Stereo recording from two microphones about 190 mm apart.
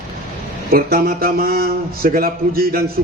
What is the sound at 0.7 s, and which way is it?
Speech, 50° right (ahead or behind).